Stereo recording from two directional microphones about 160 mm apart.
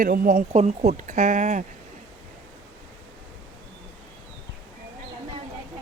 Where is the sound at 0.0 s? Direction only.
65° right (ahead or behind).